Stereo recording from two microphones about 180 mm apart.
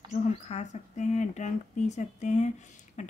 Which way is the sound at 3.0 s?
40° left (ahead or behind).